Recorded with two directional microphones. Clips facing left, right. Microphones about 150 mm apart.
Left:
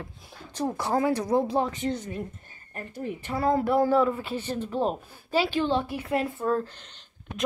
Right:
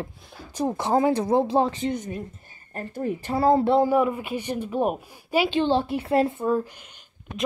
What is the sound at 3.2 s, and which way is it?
Speech, 30° right (ahead or behind).